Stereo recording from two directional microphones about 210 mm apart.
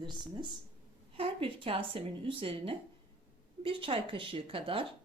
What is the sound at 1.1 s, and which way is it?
Speech, 25° right (ahead or behind).